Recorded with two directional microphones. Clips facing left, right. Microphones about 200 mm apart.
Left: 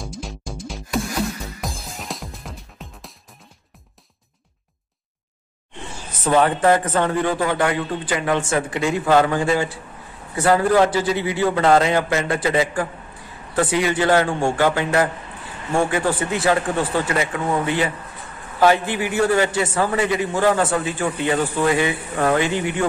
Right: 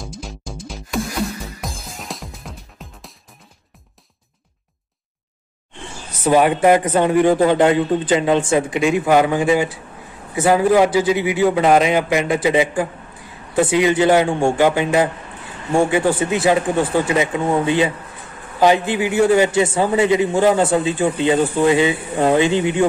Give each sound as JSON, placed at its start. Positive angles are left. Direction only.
{"t": 0.0, "sound": "music", "side_deg": 0}
{"t": 6.2, "sound": "a man's voice", "side_deg": -15}